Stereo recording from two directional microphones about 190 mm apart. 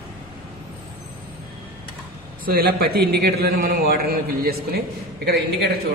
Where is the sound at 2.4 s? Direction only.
55° right (ahead or behind).